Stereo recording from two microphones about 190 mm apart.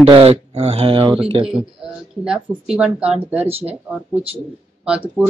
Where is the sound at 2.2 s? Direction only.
5° right (ahead or behind).